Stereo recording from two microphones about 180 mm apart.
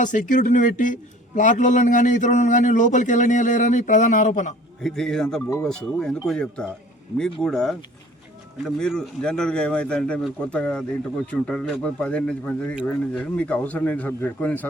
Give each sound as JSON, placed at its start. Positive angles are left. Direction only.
{"t": 0.0, "sound": "a man's voice", "side_deg": 45}
{"t": 4.8, "sound": "speech", "side_deg": 0}